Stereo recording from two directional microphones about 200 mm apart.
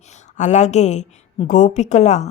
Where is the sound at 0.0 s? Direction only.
35° left (ahead or behind).